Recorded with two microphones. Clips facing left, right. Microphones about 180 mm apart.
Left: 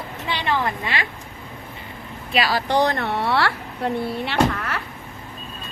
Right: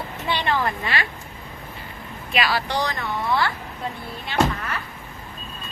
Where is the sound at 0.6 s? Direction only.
20° left (ahead or behind).